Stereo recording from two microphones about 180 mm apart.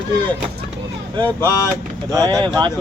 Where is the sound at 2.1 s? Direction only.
20° right (ahead or behind).